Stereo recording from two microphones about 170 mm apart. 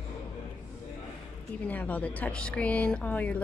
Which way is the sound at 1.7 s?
10° left (ahead or behind).